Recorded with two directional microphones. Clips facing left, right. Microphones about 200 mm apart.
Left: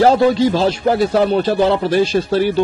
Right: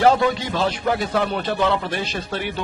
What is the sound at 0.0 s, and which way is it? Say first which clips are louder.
Speech: left 6 dB; 35° left (ahead or behind).